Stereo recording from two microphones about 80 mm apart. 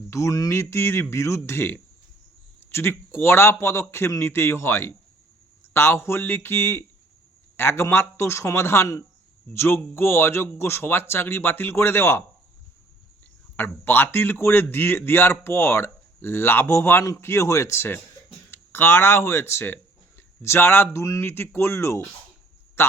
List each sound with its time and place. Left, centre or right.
0.1 s a man's voice: left
13.6 s a man's voice: left